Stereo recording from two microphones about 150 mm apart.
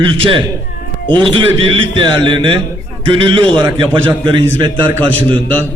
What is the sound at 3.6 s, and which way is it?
Speech, 30° right (ahead or behind).